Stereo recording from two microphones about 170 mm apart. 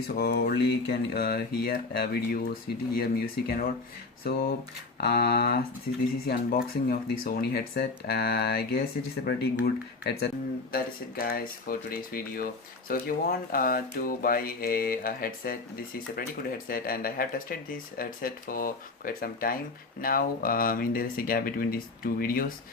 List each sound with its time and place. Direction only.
0.1 s speech: 70° left (ahead or behind)
10.7 s speech: 60° left (ahead or behind)